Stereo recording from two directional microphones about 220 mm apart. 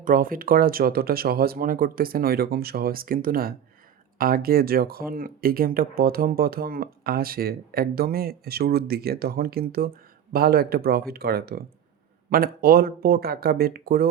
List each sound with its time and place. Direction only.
0.0 s speech: 40° right (ahead or behind)